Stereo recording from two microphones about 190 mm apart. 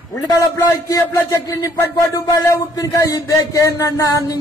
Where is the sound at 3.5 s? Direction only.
15° left (ahead or behind).